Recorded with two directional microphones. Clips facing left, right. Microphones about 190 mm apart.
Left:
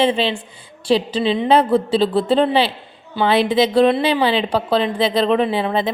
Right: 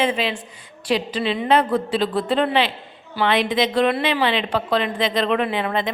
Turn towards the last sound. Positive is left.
turn(degrees=30)  # may be behind; listen again after turning